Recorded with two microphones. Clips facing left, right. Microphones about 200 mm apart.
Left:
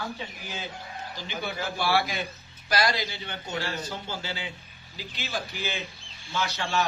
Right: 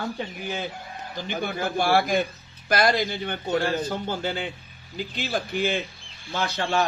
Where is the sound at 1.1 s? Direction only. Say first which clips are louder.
Right 6 dB; 50° right (ahead or behind).